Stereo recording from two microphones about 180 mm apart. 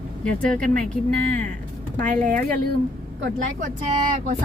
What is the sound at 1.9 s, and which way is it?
Speech, 50° right (ahead or behind).